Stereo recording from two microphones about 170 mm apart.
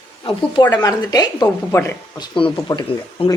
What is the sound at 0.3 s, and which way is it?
Speech, 25° left (ahead or behind).